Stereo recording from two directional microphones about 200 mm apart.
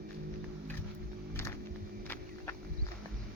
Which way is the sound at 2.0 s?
10° left (ahead or behind).